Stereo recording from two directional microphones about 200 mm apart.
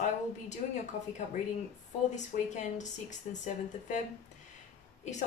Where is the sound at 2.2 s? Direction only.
35° left (ahead or behind).